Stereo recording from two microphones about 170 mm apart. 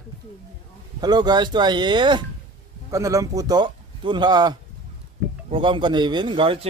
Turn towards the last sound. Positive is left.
turn(degrees=-30)  # may be behind; listen again after turning